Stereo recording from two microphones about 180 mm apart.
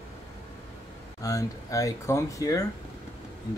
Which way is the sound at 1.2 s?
20° left (ahead or behind).